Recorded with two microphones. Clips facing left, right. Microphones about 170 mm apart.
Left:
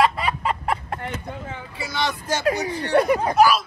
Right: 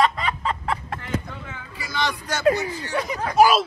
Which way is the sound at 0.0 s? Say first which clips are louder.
Left 1 dB; 10° left (ahead or behind).